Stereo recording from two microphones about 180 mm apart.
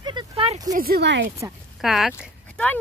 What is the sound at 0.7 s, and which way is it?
Speech, 60° right (ahead or behind).